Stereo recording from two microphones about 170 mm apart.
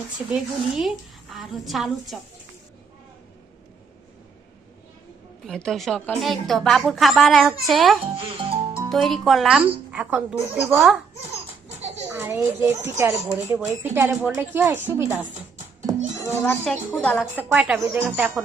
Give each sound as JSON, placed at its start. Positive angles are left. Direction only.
{"t": 0.2, "sound": "a woman's voice", "side_deg": -10}
{"t": 5.5, "sound": "a woman's voice", "side_deg": 0}
{"t": 8.1, "sound": "music", "side_deg": -30}
{"t": 8.9, "sound": "a woman's voice", "side_deg": 0}
{"t": 12.1, "sound": "speech", "side_deg": -15}
{"t": 16.2, "sound": "a child's voice", "side_deg": 15}
{"t": 17.3, "sound": "speech", "side_deg": -10}